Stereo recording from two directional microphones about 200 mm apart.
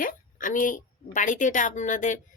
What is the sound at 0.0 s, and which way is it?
A woman's voice, 45° left (ahead or behind).